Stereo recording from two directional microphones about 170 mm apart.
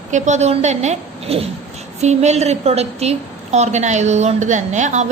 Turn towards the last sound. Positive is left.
turn(degrees=-45)  # may be behind; listen again after turning